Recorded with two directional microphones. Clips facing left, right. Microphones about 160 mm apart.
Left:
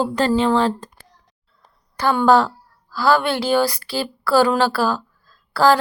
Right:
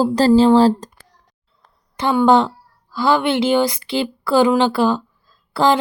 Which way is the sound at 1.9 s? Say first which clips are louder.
Right 1 dB; 20° right (ahead or behind).